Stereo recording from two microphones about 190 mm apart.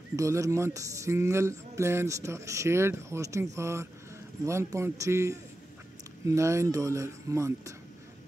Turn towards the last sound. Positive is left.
turn(degrees=-15)  # may be behind; listen again after turning